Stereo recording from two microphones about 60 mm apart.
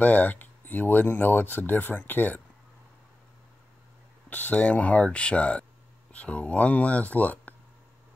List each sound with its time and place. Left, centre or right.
0.0 s speech: left
4.3 s speech: left